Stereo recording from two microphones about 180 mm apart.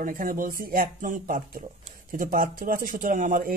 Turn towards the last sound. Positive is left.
turn(degrees=-50)  # may be behind; listen again after turning